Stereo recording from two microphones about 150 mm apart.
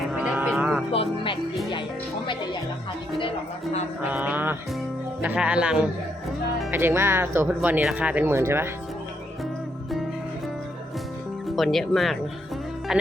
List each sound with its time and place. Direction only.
0.1 s music: 5° right (ahead or behind)
0.9 s music: 35° left (ahead or behind)
4.1 s music: 10° right (ahead or behind)
5.2 s speech: 10° right (ahead or behind)
11.4 s speech: centre (ahead or behind)